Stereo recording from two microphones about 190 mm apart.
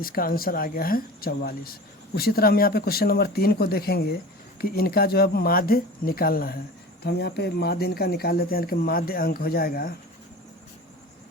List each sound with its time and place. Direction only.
0.0 s speech: 50° left (ahead or behind)